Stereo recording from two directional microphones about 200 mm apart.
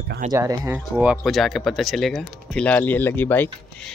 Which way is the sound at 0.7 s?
10° right (ahead or behind).